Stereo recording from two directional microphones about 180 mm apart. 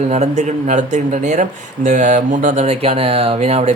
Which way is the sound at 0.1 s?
40° right (ahead or behind).